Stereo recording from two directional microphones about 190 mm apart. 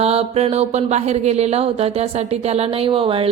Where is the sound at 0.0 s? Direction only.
30° right (ahead or behind).